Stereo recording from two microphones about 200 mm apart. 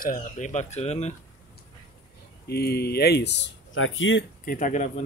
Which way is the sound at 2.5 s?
55° left (ahead or behind).